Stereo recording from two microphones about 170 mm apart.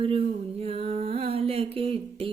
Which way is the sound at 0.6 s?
35° right (ahead or behind).